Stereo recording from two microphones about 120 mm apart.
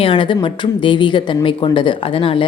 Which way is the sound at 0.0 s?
45° left (ahead or behind).